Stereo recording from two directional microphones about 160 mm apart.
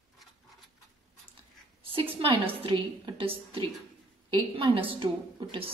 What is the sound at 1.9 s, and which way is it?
A woman's voice, 35° right (ahead or behind).